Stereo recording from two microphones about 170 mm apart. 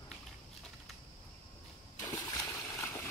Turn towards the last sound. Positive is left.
turn(degrees=15)  # may be behind; listen again after turning